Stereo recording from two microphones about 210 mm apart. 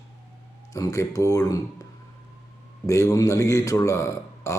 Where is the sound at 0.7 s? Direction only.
15° left (ahead or behind).